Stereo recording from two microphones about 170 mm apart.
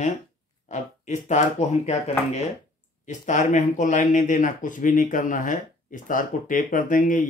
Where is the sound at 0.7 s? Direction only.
45° left (ahead or behind).